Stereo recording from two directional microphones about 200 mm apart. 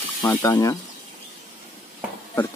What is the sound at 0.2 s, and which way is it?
Speech, 10° left (ahead or behind).